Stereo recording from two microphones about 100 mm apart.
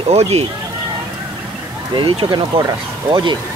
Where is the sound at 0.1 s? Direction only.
90° right.